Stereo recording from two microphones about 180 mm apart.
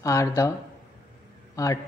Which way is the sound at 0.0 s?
15° left (ahead or behind).